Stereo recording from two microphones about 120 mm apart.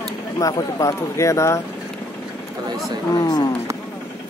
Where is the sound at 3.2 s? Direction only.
35° left (ahead or behind).